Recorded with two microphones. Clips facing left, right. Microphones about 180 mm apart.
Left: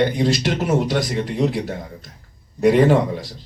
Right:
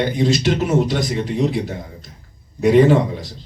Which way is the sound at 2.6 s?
50° left (ahead or behind).